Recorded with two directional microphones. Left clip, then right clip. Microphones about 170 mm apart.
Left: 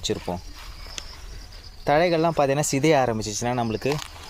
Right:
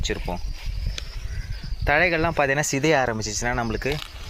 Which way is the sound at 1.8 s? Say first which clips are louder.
Even; 25° left (ahead or behind).